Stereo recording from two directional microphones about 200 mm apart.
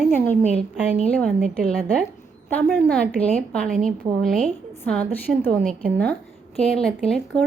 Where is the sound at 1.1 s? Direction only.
5° left (ahead or behind).